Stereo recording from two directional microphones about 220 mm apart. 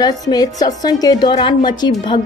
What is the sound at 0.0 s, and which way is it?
A woman's voice, 15° left (ahead or behind).